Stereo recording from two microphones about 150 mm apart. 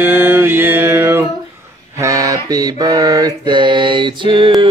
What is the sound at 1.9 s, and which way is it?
Mantra, 20° right (ahead or behind).